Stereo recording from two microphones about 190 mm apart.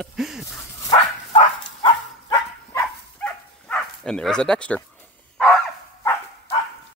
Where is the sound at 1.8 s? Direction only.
25° left (ahead or behind).